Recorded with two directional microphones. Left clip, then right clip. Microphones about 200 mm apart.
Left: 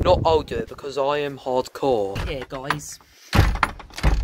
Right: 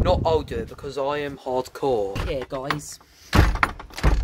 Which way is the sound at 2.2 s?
40° left (ahead or behind).